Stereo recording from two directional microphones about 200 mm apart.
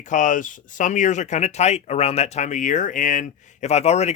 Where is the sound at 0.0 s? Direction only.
40° left (ahead or behind).